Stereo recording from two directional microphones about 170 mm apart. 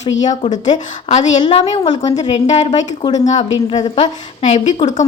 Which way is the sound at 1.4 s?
30° left (ahead or behind).